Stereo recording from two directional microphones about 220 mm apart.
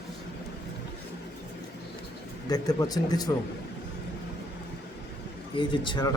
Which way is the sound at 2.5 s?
15° left (ahead or behind).